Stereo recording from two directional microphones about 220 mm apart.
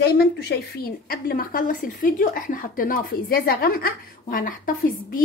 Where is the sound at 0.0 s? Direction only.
45° left (ahead or behind).